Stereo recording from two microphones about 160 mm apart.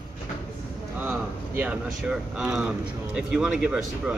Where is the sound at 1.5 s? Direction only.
5° right (ahead or behind).